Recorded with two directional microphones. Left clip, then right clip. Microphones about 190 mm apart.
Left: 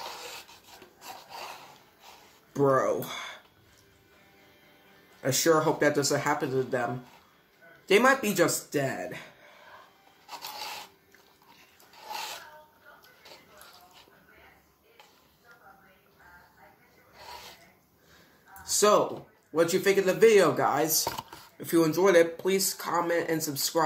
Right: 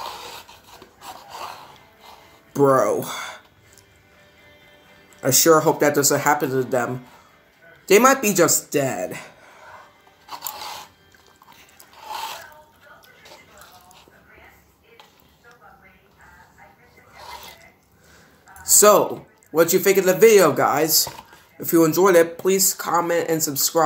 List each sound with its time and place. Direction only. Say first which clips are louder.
0.0 s a sound: right 7 dB; centre (ahead or behind)
2.5 s speech: right 8 dB; 45° right (ahead or behind)
5.2 s speech: right 8 dB; 40° right (ahead or behind)
10.2 s filing: right 7 dB; centre (ahead or behind)
18.6 s a sound: right 9 dB; 45° right (ahead or behind)
19.5 s speech: right 7 dB; 40° right (ahead or behind)